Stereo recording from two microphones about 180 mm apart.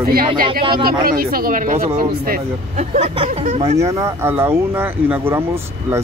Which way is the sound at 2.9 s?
40° right (ahead or behind).